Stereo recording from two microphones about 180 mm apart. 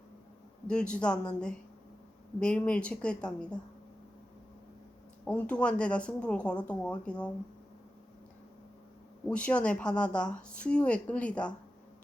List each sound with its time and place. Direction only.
0.7 s a woman's voice: 5° left (ahead or behind)
5.2 s a woman's voice: 5° left (ahead or behind)
9.2 s a woman's voice: 5° left (ahead or behind)